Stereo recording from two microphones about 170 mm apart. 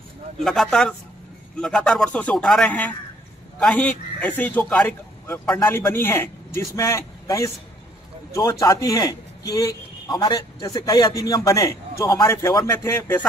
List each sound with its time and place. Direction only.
0.4 s a man's voice: centre (ahead or behind)